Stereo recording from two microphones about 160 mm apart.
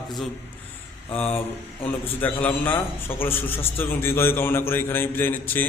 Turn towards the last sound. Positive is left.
turn(degrees=10)  # may be behind; listen again after turning